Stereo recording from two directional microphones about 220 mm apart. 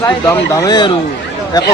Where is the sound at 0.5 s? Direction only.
20° left (ahead or behind).